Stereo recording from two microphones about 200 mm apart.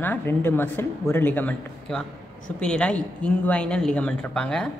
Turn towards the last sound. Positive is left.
turn(degrees=5)  # may be behind; listen again after turning